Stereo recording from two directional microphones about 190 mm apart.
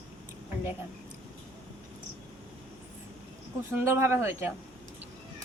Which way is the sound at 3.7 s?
15° right (ahead or behind).